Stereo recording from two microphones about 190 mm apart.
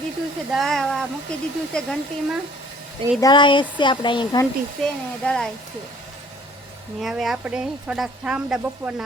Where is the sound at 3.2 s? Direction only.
25° left (ahead or behind).